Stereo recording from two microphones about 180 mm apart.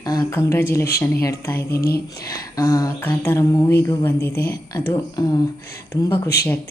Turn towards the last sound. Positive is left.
turn(degrees=15)  # may be behind; listen again after turning